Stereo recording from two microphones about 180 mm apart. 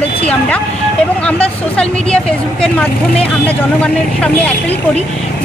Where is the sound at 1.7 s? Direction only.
5° left (ahead or behind).